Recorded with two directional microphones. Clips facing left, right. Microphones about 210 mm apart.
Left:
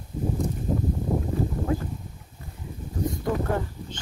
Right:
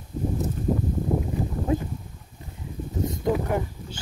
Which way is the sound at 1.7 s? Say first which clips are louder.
Right 4 dB; 20° right (ahead or behind).